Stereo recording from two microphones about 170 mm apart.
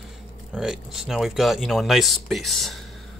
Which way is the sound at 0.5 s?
5° right (ahead or behind).